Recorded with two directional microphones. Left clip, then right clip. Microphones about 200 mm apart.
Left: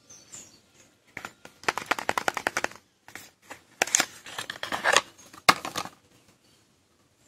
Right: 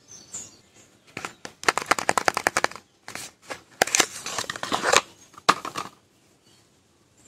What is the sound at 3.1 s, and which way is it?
Shuffling cards, 20° right (ahead or behind).